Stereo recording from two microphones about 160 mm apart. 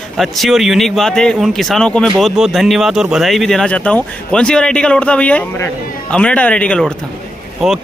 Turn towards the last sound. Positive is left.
turn(degrees=0)  # may be behind; listen again after turning